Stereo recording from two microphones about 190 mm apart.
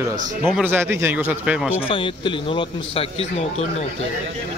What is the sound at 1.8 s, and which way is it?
Speech, 30° left (ahead or behind).